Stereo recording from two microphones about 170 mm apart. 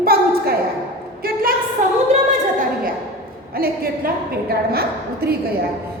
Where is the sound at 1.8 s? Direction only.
45° right (ahead or behind).